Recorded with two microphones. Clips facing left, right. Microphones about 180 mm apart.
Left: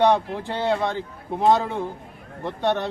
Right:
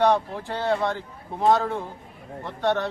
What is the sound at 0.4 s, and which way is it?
A man's voice, 20° left (ahead or behind).